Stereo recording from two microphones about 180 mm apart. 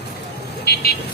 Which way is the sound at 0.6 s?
60° left (ahead or behind).